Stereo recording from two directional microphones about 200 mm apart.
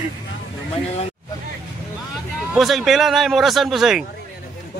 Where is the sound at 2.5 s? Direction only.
Centre (ahead or behind).